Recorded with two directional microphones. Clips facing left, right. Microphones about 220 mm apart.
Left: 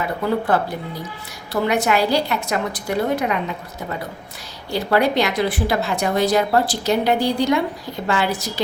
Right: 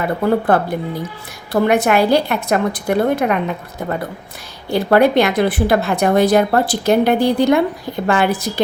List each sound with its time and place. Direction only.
0.0 s speech: 55° right (ahead or behind)
1.6 s speech: 55° right (ahead or behind)
4.7 s speech: 55° right (ahead or behind)